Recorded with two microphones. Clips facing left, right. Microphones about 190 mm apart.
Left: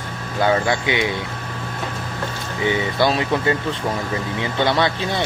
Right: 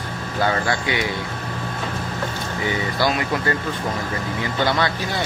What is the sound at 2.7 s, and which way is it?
Speech, 20° left (ahead or behind).